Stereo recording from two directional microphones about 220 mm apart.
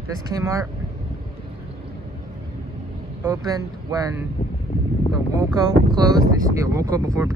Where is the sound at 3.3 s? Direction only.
15° right (ahead or behind).